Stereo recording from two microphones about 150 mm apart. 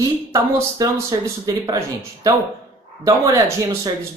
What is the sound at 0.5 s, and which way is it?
Speech, 20° right (ahead or behind).